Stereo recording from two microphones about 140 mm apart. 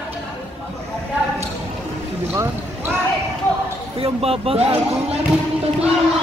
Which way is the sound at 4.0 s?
45° right (ahead or behind).